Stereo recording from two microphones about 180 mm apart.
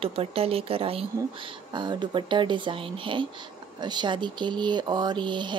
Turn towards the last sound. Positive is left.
turn(degrees=-25)  # may be behind; listen again after turning